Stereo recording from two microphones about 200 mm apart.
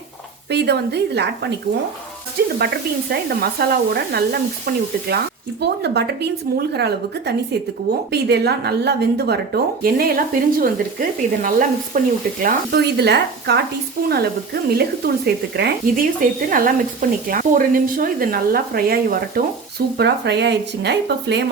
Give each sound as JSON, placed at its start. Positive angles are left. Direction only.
{"t": 0.5, "sound": "speech", "side_deg": -55}
{"t": 2.6, "sound": "speech", "side_deg": -55}
{"t": 16.5, "sound": "speech", "side_deg": -45}